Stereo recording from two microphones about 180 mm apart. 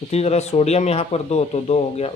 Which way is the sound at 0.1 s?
35° left (ahead or behind).